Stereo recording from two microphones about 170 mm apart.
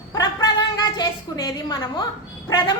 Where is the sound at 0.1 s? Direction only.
25° left (ahead or behind).